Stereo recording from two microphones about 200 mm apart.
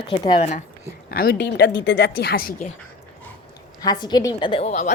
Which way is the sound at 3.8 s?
20° left (ahead or behind).